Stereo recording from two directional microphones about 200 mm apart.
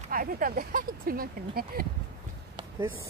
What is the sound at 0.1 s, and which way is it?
Speech, 45° right (ahead or behind).